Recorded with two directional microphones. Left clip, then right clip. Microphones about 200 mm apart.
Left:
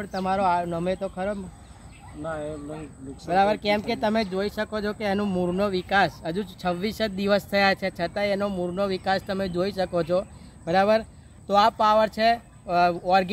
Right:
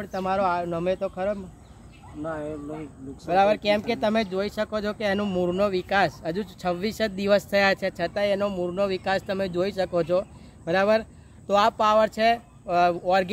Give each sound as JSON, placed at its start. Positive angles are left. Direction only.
{"t": 0.0, "sound": "speech", "side_deg": -20}
{"t": 2.2, "sound": "speech", "side_deg": 15}
{"t": 3.3, "sound": "speech", "side_deg": -20}